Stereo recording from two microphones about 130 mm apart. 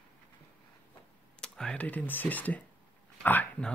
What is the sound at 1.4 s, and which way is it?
Speech, 5° left (ahead or behind).